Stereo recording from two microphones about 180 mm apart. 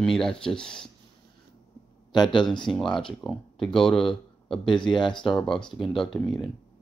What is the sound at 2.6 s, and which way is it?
Speech, 5° left (ahead or behind).